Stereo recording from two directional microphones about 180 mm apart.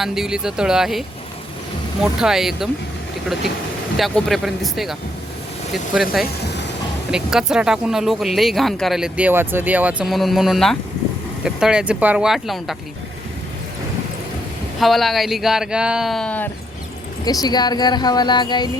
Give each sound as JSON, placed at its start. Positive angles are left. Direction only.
{"t": 0.0, "sound": "speech", "side_deg": 0}
{"t": 3.9, "sound": "speech", "side_deg": 0}
{"t": 6.4, "sound": "speech", "side_deg": 70}
{"t": 7.1, "sound": "speech", "side_deg": -5}
{"t": 14.8, "sound": "speech", "side_deg": 0}
{"t": 17.2, "sound": "speech", "side_deg": 20}